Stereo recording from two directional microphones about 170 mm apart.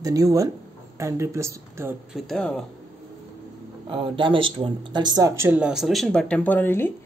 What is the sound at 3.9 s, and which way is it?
A woman's voice, 30° right (ahead or behind).